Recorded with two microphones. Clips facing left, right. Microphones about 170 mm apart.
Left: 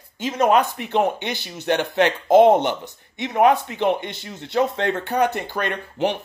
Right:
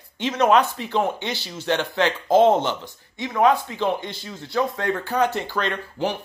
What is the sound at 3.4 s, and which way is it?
Speech, 60° left (ahead or behind).